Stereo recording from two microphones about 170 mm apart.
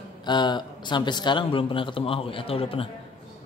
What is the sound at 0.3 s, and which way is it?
A man's voice, 25° left (ahead or behind).